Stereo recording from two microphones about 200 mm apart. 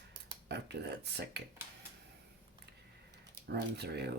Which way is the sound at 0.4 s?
55° right (ahead or behind).